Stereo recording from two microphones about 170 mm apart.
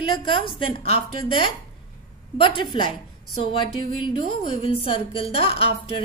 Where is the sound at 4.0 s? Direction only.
30° left (ahead or behind).